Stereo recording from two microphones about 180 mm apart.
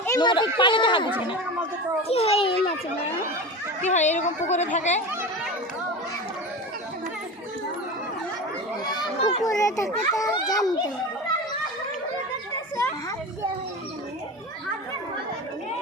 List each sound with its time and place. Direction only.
0.2 s a child's voice: 25° left (ahead or behind)
3.8 s a woman's voice: 40° left (ahead or behind)
9.2 s a child's voice: 20° left (ahead or behind)
12.7 s children playing: 20° left (ahead or behind)